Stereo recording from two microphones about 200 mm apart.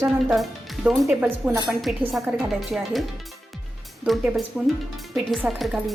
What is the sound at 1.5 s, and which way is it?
Speech, 15° right (ahead or behind).